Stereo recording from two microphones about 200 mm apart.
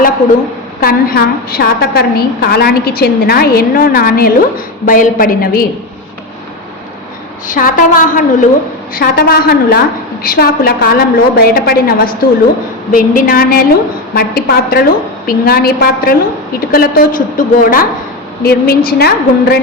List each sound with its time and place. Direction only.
0.8 s a woman's voice: 50° left (ahead or behind)
7.4 s a woman's voice: 40° left (ahead or behind)